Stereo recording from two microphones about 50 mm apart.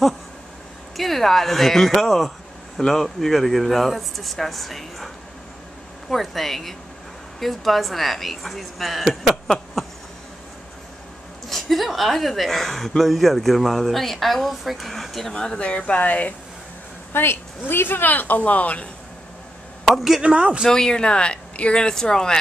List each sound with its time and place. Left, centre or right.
0.9 s a woman's voice: centre
11.4 s a woman's voice: centre
15.3 s speech: centre; by 16.3 s left
17.1 s speech: left
19.8 s speech: centre
20.2 s speech: right
20.6 s speech: centre